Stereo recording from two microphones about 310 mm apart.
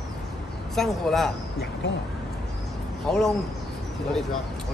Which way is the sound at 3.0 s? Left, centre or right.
Centre.